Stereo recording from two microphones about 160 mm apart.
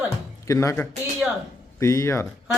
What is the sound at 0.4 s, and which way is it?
A woman's voice, 20° left (ahead or behind).